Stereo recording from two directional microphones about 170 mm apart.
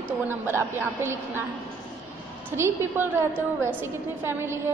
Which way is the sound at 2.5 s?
15° right (ahead or behind).